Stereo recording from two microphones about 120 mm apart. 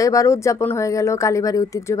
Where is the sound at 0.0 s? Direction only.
25° left (ahead or behind).